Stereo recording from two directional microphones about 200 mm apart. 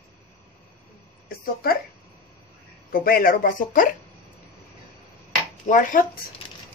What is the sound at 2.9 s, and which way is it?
Speech, 45° left (ahead or behind).